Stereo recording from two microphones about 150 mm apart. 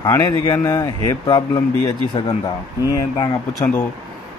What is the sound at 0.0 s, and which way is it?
A man's voice, 25° left (ahead or behind).